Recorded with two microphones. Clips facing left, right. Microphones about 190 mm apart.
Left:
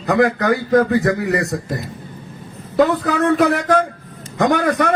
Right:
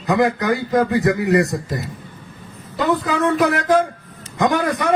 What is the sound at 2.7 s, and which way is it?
A man's voice, 60° left (ahead or behind).